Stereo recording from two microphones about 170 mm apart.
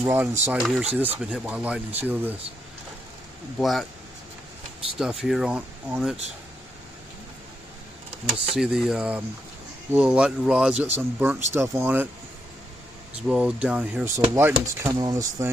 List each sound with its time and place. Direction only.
0.0 s speech: 15° right (ahead or behind)
0.6 s speech: centre (ahead or behind)
3.5 s speech: centre (ahead or behind)
4.9 s speech: 5° right (ahead or behind)
8.3 s speech: centre (ahead or behind)
13.3 s speech: 5° right (ahead or behind)